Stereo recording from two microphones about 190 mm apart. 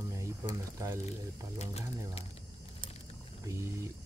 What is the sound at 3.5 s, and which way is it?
Speech, 15° right (ahead or behind).